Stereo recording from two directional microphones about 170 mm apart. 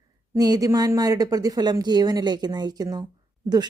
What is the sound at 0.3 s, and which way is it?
A woman's voice, 20° right (ahead or behind).